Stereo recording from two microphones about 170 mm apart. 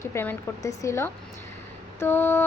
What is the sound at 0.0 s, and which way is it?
A woman's voice, 15° left (ahead or behind).